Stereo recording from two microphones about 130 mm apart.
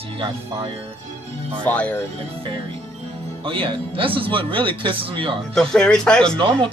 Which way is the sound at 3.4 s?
40° right (ahead or behind).